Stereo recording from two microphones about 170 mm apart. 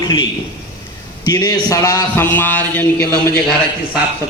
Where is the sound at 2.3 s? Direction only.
10° left (ahead or behind).